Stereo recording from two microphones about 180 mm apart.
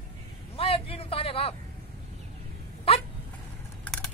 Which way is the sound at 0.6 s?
30° left (ahead or behind).